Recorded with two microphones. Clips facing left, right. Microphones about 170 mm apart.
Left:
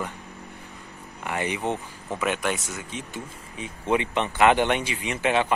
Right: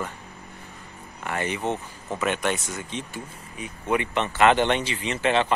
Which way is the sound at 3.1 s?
25° left (ahead or behind).